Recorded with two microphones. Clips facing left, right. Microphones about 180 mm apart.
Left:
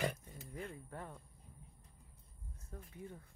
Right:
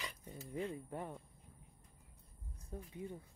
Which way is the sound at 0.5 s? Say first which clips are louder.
Right 6 dB; 20° right (ahead or behind).